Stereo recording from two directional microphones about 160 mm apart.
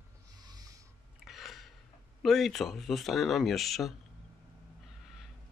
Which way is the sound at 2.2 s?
Centre (ahead or behind).